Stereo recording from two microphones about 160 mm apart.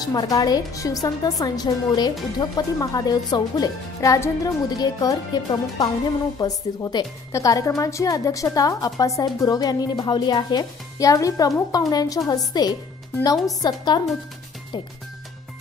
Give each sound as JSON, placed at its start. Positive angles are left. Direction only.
{"t": 0.0, "sound": "speech", "side_deg": 25}